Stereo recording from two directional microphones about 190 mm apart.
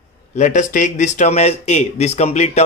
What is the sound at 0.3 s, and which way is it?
A man's voice, 40° left (ahead or behind).